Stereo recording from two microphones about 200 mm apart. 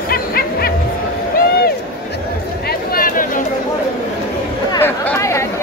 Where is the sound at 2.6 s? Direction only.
50° left (ahead or behind).